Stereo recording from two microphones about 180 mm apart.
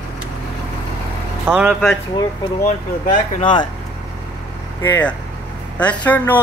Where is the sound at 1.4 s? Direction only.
5° right (ahead or behind).